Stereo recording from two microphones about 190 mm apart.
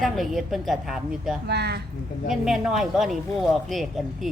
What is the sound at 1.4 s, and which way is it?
Speech, 60° right (ahead or behind).